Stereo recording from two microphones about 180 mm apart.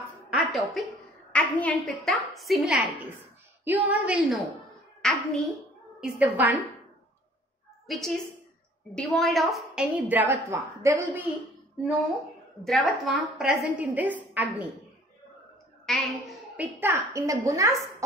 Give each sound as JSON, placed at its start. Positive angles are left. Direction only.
{"t": 0.3, "sound": "a sound", "side_deg": 0}
{"t": 1.3, "sound": "a woman's voice", "side_deg": 10}
{"t": 7.8, "sound": "a woman's voice", "side_deg": 0}
{"t": 12.6, "sound": "a woman's voice", "side_deg": 0}
{"t": 15.8, "sound": "a sound", "side_deg": 0}
{"t": 16.8, "sound": "a woman's voice", "side_deg": -15}